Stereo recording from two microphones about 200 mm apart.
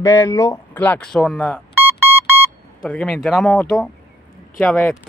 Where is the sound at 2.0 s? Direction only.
10° right (ahead or behind).